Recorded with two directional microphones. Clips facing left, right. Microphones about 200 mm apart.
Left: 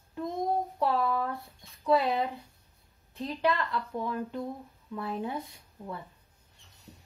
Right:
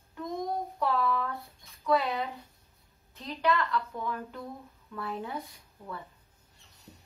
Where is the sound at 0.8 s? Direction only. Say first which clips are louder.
Even; 30° left (ahead or behind).